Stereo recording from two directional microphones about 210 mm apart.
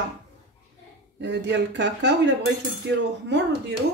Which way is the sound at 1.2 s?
55° right (ahead or behind).